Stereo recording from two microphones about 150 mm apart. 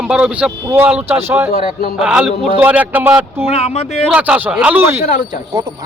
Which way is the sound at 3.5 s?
45° left (ahead or behind).